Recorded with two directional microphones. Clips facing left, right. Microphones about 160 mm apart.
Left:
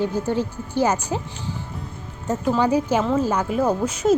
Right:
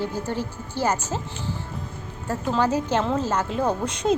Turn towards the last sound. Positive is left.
turn(degrees=5)  # may be behind; listen again after turning